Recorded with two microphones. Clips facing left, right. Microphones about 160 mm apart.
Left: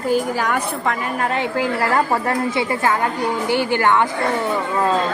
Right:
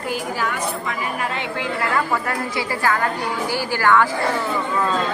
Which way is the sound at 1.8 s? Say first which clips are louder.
Left 1 dB; 30° left (ahead or behind).